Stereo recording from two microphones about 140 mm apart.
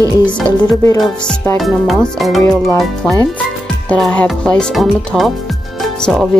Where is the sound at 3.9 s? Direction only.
10° left (ahead or behind).